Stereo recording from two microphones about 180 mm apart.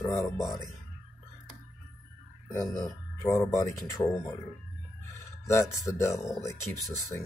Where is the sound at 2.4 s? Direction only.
20° left (ahead or behind).